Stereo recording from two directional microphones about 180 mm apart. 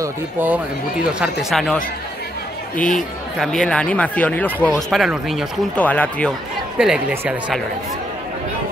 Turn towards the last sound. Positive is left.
turn(degrees=-10)  # may be behind; listen again after turning